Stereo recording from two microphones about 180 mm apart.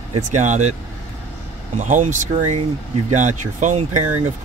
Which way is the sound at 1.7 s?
40° right (ahead or behind).